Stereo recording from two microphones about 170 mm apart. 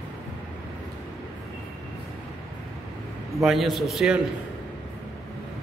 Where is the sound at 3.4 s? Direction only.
Centre (ahead or behind).